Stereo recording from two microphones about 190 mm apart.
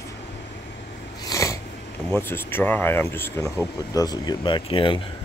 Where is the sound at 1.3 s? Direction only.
15° left (ahead or behind).